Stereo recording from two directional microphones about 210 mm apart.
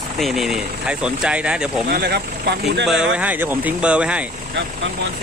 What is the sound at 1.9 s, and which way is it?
Speech, 50° right (ahead or behind).